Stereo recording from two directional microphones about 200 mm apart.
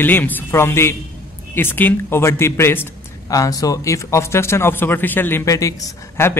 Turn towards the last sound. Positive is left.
turn(degrees=15)  # may be behind; listen again after turning